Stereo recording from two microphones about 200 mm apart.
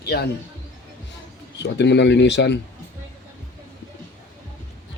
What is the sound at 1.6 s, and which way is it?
Speech, 60° left (ahead or behind).